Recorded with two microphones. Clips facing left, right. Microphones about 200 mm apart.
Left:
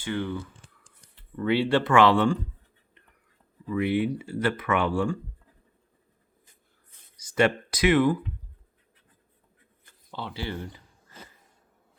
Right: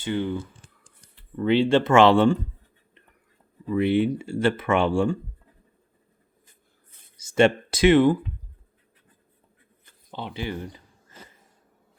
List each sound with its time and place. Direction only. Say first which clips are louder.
0.0 s speech: right 3 dB; 20° right (ahead or behind)
3.7 s speech: right 4 dB; 25° right (ahead or behind)
7.2 s speech: right 4 dB; 25° right (ahead or behind)
10.1 s speech: right 2 dB; 20° right (ahead or behind)